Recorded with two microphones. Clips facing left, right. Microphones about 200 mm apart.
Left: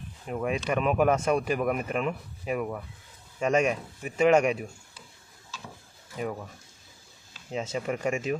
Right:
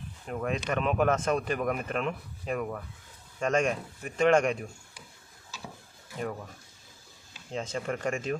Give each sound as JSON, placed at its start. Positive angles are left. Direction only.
{"t": 0.3, "sound": "speech", "side_deg": 10}
{"t": 7.5, "sound": "speech", "side_deg": 10}